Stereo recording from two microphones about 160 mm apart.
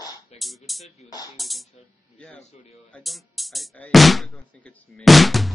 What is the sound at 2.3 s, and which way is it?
Speech, 40° left (ahead or behind).